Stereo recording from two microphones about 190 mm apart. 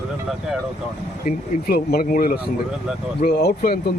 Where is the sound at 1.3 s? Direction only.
50° left (ahead or behind).